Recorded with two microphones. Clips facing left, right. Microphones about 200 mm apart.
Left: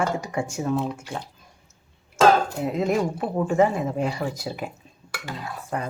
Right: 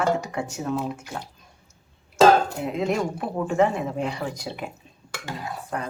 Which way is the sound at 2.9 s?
5° left (ahead or behind).